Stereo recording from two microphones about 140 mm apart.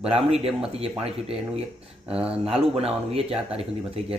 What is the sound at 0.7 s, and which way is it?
Speech, 45° right (ahead or behind).